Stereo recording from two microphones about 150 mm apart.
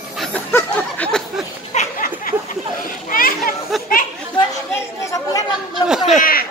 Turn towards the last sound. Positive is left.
turn(degrees=75)  # may be behind; listen again after turning